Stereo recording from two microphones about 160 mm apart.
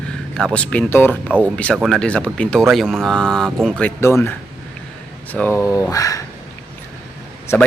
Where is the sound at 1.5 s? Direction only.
5° left (ahead or behind).